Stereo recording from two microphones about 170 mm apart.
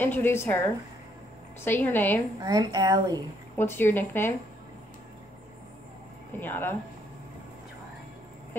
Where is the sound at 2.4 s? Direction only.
20° right (ahead or behind).